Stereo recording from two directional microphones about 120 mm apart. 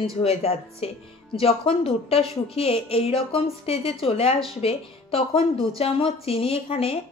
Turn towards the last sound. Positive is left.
turn(degrees=55)  # may be behind; listen again after turning